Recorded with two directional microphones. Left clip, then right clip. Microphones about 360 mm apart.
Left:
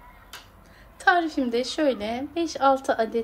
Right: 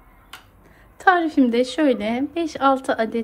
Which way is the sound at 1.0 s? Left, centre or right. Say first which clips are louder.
Right 4 dB; centre.